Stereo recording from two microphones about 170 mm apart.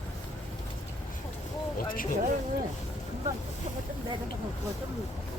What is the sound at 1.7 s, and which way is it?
Speech, 55° left (ahead or behind).